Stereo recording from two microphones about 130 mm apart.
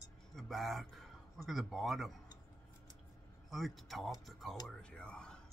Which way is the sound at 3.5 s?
Centre (ahead or behind).